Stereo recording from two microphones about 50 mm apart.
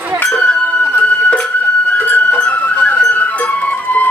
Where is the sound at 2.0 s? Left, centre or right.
Left.